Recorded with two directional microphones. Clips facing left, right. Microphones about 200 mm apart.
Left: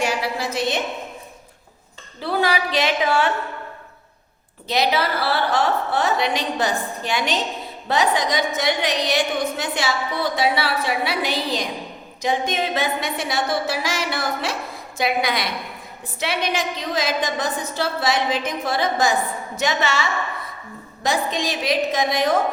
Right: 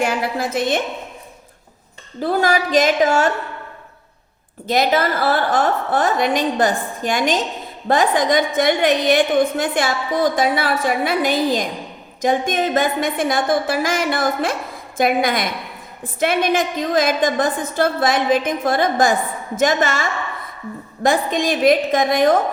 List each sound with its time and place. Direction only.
0.0 s a sound: 55° right (ahead or behind)
2.2 s a woman's voice: 45° right (ahead or behind)
4.7 s a woman's voice: 50° right (ahead or behind)